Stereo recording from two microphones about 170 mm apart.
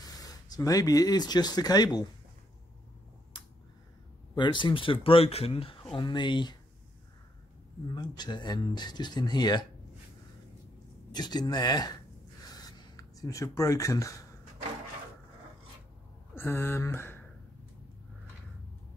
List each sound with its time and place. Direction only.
0.0 s speech: 20° left (ahead or behind)
4.4 s speech: 30° left (ahead or behind)
7.9 s speech: 25° left (ahead or behind)
11.1 s speech: 25° left (ahead or behind)
12.4 s writing: 25° left (ahead or behind)
16.3 s speech: 15° left (ahead or behind)